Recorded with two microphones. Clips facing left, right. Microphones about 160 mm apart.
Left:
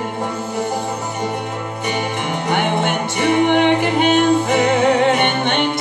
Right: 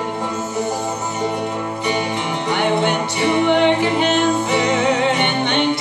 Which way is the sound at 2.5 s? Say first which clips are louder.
Right 1 dB; 55° left (ahead or behind).